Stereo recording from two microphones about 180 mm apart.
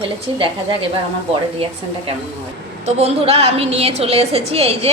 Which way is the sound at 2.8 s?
35° right (ahead or behind).